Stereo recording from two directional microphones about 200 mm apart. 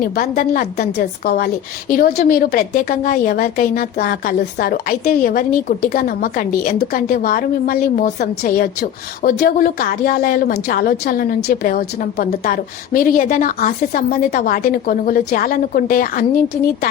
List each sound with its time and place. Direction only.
0.0 s a woman's voice: 45° left (ahead or behind)